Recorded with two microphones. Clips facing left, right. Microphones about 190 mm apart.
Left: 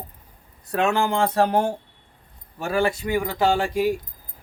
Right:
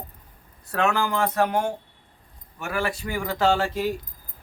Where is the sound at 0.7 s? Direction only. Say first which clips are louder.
Left 2 dB; 25° left (ahead or behind).